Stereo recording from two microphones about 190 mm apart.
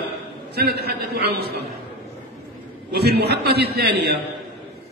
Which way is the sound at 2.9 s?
60° right (ahead or behind).